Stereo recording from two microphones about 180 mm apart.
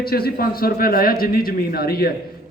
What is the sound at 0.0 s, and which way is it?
A man's voice, 60° left (ahead or behind).